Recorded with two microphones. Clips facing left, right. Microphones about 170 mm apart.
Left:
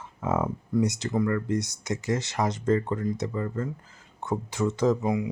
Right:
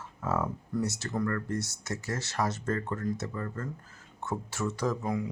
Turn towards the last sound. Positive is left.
turn(degrees=20)  # may be behind; listen again after turning